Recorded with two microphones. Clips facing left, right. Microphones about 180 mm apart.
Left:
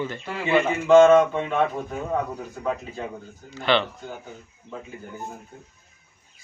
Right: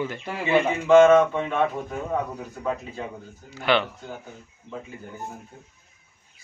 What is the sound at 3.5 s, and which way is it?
Speech, 10° right (ahead or behind).